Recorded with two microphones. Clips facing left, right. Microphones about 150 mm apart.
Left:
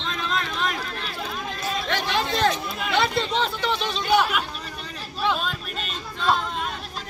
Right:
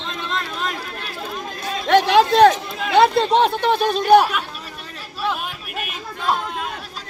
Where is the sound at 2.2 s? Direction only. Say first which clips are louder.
Right 10 dB; 50° right (ahead or behind).